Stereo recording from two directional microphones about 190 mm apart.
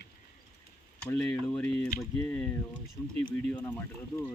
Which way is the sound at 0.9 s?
5° left (ahead or behind).